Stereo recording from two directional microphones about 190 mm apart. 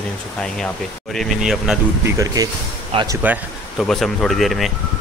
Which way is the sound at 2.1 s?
15° right (ahead or behind).